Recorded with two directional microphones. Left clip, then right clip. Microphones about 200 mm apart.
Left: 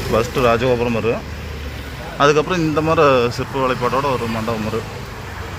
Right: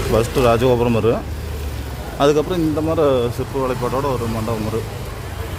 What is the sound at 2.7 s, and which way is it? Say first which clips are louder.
Speech: left 4 dB; 5° left (ahead or behind).